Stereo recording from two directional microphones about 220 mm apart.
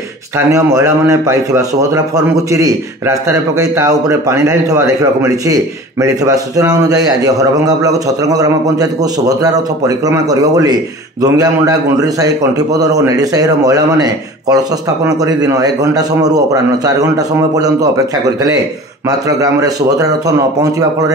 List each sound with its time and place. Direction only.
0.5 s a man's voice: 15° right (ahead or behind)
19.0 s a man's voice: 15° right (ahead or behind)